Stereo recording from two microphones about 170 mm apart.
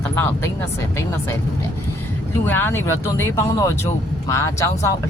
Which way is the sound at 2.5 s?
10° left (ahead or behind).